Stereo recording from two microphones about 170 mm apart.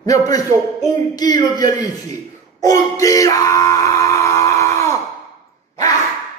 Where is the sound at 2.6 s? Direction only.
20° left (ahead or behind).